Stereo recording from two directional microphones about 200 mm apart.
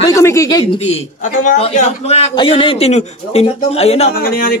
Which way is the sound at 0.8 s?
35° left (ahead or behind).